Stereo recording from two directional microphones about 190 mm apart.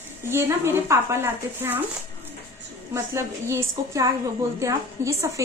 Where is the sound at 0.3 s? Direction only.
15° right (ahead or behind).